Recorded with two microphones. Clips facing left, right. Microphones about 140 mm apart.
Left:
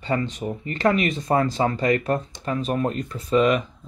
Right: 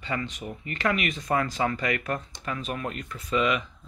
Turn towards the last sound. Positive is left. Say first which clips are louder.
# left 7 dB
turn(degrees=40)  # may be behind; listen again after turning